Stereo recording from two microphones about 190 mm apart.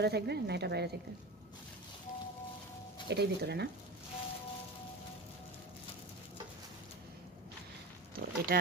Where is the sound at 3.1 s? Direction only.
60° right (ahead or behind).